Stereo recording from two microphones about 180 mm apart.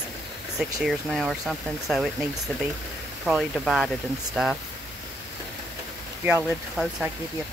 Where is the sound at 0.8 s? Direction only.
Centre (ahead or behind).